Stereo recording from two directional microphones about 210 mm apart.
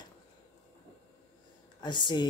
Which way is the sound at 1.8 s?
20° left (ahead or behind).